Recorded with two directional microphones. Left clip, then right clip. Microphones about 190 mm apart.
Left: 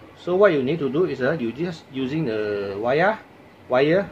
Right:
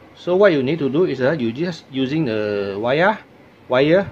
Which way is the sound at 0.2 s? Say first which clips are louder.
Right 3 dB; 40° right (ahead or behind).